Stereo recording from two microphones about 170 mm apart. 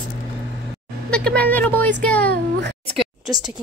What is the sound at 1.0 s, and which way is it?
Speech, 5° left (ahead or behind).